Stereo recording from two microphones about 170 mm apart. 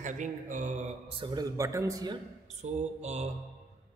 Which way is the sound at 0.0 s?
45° right (ahead or behind).